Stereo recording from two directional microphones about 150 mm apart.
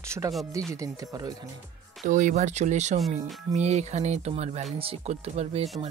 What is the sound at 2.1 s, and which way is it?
Speech, 55° right (ahead or behind).